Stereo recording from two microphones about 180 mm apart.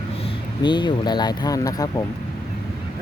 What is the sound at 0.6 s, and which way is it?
Speech, 25° left (ahead or behind).